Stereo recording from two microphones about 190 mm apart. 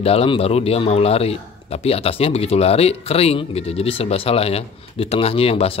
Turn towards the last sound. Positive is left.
turn(degrees=30)  # may be behind; listen again after turning